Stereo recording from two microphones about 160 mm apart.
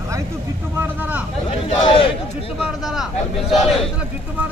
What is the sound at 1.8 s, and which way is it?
Speech, 30° left (ahead or behind).